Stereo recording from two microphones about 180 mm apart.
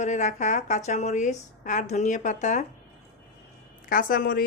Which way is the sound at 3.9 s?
50° left (ahead or behind).